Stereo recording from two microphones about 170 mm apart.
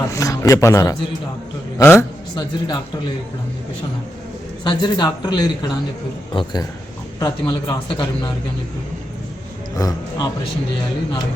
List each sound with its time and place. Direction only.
0.1 s a man's voice: 20° left (ahead or behind)
4.6 s speech: 25° left (ahead or behind)
9.7 s speech: 20° left (ahead or behind)